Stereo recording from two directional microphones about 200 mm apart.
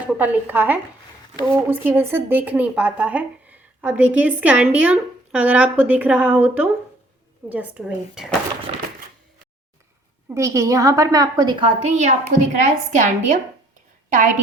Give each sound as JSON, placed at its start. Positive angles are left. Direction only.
{"t": 0.0, "sound": "a woman's voice", "side_deg": -10}
{"t": 8.7, "sound": "a sound", "side_deg": -30}
{"t": 10.2, "sound": "a woman's voice", "side_deg": -15}